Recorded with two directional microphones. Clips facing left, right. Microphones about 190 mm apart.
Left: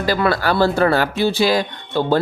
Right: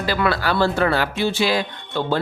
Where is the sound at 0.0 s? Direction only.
40° left (ahead or behind).